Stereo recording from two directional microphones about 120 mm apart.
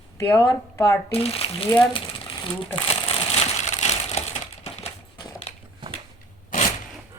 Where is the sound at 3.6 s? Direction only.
70° left (ahead or behind).